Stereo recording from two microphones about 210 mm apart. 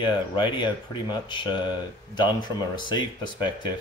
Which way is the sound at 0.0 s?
20° left (ahead or behind).